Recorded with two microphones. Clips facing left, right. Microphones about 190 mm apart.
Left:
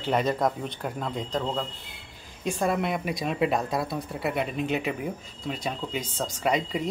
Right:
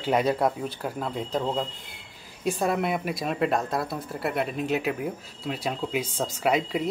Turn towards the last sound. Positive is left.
turn(degrees=-5)  # may be behind; listen again after turning